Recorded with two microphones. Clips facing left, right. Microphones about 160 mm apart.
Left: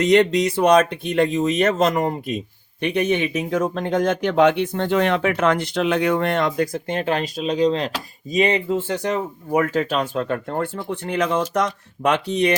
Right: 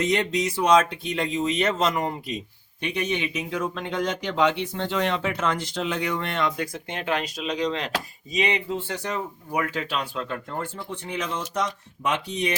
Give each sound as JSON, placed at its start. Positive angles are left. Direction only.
{"t": 0.0, "sound": "speech", "side_deg": 70}